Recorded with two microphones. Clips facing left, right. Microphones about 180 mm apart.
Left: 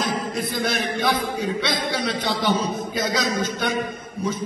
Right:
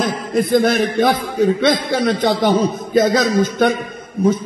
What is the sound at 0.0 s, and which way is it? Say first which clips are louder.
A man's voice: right 7 dB; 55° right (ahead or behind).